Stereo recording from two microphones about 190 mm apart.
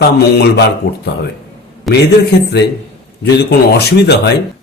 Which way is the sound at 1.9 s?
Centre (ahead or behind).